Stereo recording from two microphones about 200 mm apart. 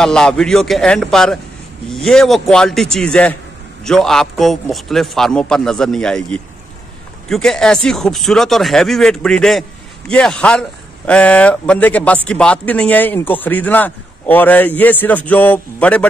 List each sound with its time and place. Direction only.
0.0 s speech: 5° left (ahead or behind)